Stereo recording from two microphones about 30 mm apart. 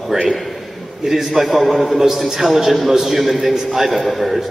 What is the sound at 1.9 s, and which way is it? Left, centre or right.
A man's voice, centre.